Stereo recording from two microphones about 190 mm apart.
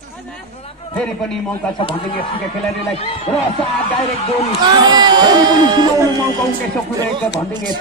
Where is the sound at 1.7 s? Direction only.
25° left (ahead or behind).